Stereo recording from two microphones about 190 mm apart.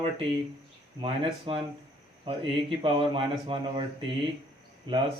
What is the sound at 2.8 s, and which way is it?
Speech, 25° right (ahead or behind).